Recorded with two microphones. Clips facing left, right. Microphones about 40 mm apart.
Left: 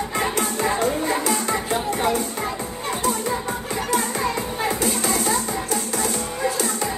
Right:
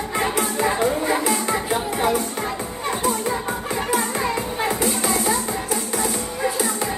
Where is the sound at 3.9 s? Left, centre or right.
Centre.